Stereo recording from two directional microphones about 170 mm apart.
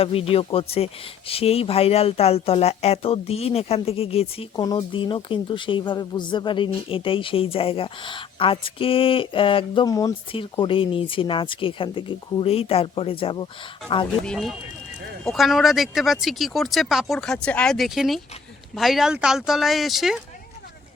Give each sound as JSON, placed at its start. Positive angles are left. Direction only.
{"t": 0.0, "sound": "speech", "side_deg": 35}
{"t": 14.3, "sound": "speech", "side_deg": 0}